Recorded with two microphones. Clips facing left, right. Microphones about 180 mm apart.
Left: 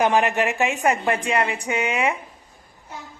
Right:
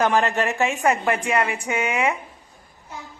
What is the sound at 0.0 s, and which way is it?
A woman's voice, 15° left (ahead or behind).